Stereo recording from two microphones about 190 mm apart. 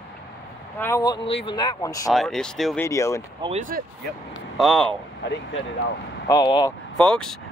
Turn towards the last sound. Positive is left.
turn(degrees=5)  # may be behind; listen again after turning